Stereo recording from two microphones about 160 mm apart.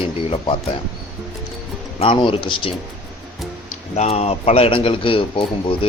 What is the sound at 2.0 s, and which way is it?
Speech, 30° left (ahead or behind).